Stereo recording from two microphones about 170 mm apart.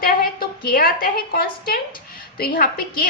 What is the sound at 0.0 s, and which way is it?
A woman's voice, 60° left (ahead or behind).